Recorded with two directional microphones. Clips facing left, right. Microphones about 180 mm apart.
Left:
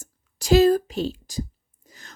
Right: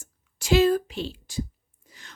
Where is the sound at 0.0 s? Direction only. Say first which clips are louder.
Left 3 dB; 40° left (ahead or behind).